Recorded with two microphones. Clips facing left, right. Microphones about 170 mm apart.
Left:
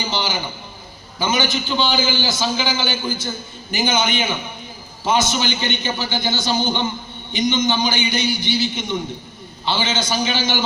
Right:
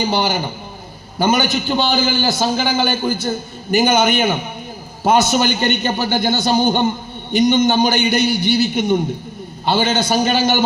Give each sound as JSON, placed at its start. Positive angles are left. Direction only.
{"t": 0.1, "sound": "a man's voice", "side_deg": -55}